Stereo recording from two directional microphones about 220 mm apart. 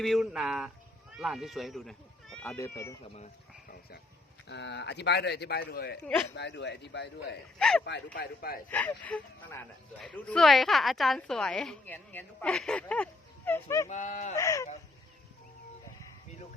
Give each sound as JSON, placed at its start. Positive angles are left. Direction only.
{"t": 0.0, "sound": "speech", "side_deg": 0}
{"t": 3.7, "sound": "a sound", "side_deg": 45}
{"t": 4.4, "sound": "speech", "side_deg": 50}
{"t": 7.6, "sound": "speech", "side_deg": 5}
{"t": 7.9, "sound": "speech", "side_deg": 50}
{"t": 8.7, "sound": "speech", "side_deg": 5}
{"t": 13.8, "sound": "speech", "side_deg": 30}
{"t": 14.3, "sound": "dog", "side_deg": 15}